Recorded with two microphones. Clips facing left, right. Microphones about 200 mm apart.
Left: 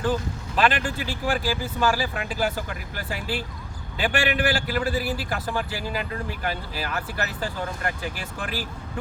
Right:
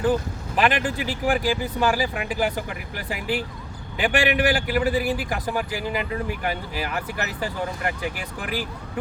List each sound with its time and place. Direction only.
0.0 s speech: 15° right (ahead or behind)
3.9 s speech: 15° right (ahead or behind)